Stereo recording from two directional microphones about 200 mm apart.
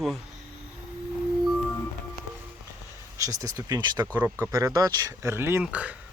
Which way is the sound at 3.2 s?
15° right (ahead or behind).